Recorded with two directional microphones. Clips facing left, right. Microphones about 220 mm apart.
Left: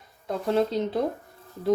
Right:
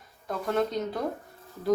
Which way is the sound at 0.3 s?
30° left (ahead or behind).